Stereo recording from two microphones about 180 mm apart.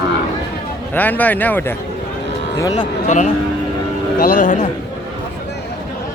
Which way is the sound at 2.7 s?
40° left (ahead or behind).